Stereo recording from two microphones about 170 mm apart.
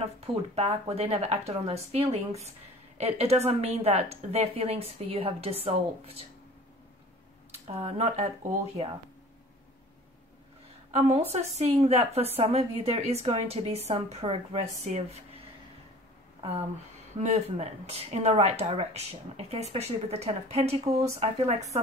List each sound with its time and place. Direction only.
0.0 s speech: 35° right (ahead or behind)
7.5 s speech: 40° right (ahead or behind)
10.9 s speech: 40° right (ahead or behind)
17.2 s speech: 40° right (ahead or behind)